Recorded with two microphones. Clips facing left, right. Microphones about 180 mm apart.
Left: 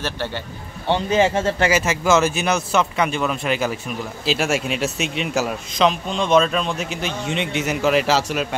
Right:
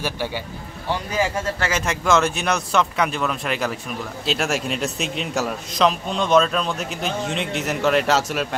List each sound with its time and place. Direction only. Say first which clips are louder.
0.0 s speech: even; 10° right (ahead or behind)
0.8 s speech: left 6 dB; 25° left (ahead or behind)
1.7 s a man's voice: right 1 dB; 5° left (ahead or behind)